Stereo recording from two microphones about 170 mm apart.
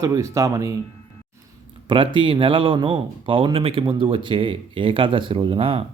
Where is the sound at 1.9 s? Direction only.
30° right (ahead or behind).